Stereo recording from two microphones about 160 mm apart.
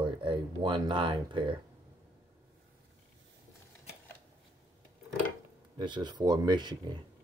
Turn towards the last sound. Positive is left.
turn(degrees=-25)  # may be behind; listen again after turning